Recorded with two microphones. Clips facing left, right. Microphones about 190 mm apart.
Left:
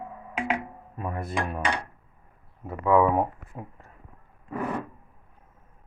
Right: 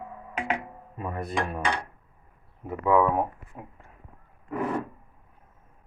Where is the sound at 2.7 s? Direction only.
15° right (ahead or behind).